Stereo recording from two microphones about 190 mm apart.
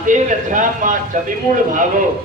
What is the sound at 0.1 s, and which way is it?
A man's voice, 45° right (ahead or behind).